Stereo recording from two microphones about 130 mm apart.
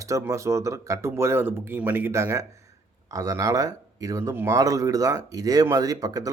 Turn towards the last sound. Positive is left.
turn(degrees=-25)  # may be behind; listen again after turning